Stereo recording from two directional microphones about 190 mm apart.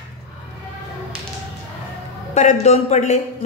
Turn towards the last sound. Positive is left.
turn(degrees=35)  # may be behind; listen again after turning